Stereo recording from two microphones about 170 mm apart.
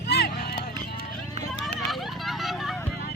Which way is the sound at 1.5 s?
Centre (ahead or behind).